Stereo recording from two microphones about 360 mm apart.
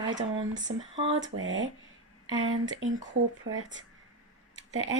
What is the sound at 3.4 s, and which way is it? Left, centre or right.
Speech, right.